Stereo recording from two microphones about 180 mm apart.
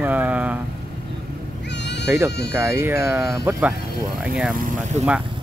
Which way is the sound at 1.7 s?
75° left (ahead or behind).